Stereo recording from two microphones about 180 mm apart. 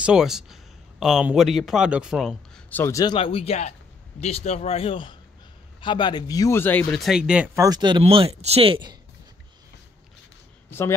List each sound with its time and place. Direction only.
0.0 s a man's voice: 5° right (ahead or behind)
2.8 s a man's voice: 20° left (ahead or behind); by 8.9 s 30° right (ahead or behind)
10.7 s speech: 15° left (ahead or behind)